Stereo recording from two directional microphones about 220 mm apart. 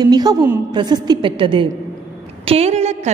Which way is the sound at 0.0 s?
15° right (ahead or behind).